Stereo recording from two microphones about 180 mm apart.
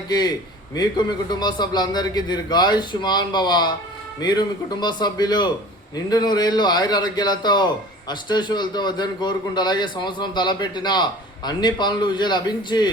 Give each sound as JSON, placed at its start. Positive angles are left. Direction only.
{"t": 0.1, "sound": "a man's voice", "side_deg": 20}